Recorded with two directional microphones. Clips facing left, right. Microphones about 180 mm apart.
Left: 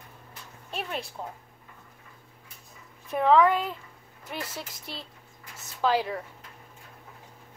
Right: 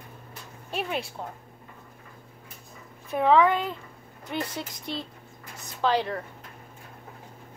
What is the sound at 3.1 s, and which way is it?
Speech, centre (ahead or behind).